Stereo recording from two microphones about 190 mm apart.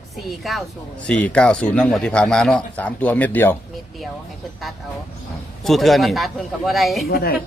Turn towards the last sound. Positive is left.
turn(degrees=55)  # may be behind; listen again after turning